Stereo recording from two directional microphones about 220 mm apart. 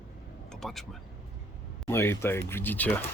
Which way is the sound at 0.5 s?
Centre (ahead or behind).